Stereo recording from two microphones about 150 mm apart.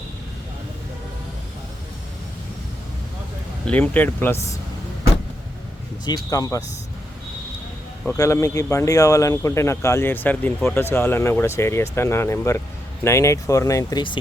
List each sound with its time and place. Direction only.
3.7 s speech: 10° left (ahead or behind)
6.3 s speech: 25° left (ahead or behind)
8.0 s speech: 20° left (ahead or behind)